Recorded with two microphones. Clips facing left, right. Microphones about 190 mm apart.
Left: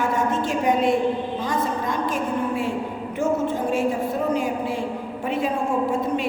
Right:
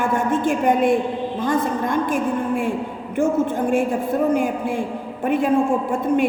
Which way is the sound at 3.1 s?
55° right (ahead or behind).